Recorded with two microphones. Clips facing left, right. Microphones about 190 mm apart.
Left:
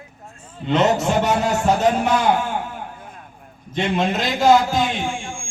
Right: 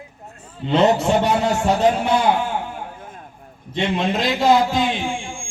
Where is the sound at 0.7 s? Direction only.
30° right (ahead or behind).